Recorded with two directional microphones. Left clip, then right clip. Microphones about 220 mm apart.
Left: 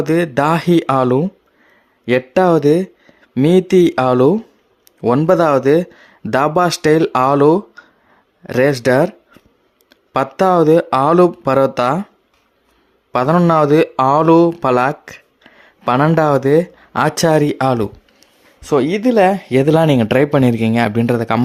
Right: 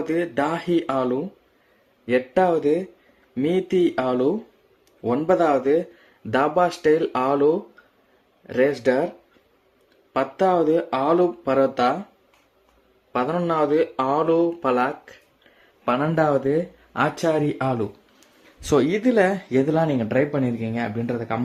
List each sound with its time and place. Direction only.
0.0 s speech: 45° left (ahead or behind)
10.1 s speech: 45° left (ahead or behind)
13.1 s speech: 45° left (ahead or behind)
18.8 s speech: 20° left (ahead or behind); by 21.4 s 45° left (ahead or behind)